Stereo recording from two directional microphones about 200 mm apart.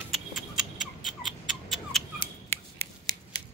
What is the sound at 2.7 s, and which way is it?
Scissors, 20° left (ahead or behind).